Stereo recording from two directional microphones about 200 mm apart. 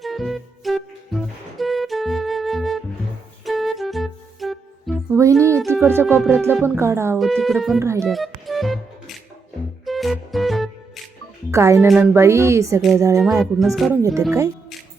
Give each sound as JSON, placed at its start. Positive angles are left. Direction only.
{"t": 0.0, "sound": "music", "side_deg": 0}
{"t": 5.1, "sound": "speech", "side_deg": -15}
{"t": 7.2, "sound": "speech", "side_deg": 0}
{"t": 7.8, "sound": "speech", "side_deg": -15}
{"t": 8.0, "sound": "music", "side_deg": 0}
{"t": 11.5, "sound": "speech", "side_deg": -15}
{"t": 13.2, "sound": "speech", "side_deg": 0}
{"t": 13.9, "sound": "speech", "side_deg": -15}